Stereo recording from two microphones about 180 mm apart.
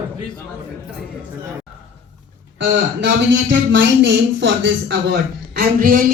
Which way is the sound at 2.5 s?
90° right.